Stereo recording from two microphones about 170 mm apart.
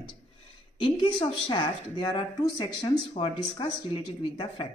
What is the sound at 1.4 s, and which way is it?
Speech, 25° left (ahead or behind).